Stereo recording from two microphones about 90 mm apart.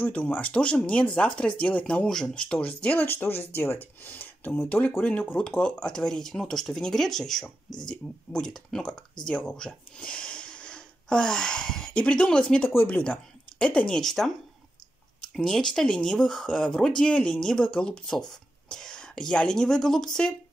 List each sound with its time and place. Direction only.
0.0 s speech: 15° left (ahead or behind)
15.3 s speech: 5° left (ahead or behind)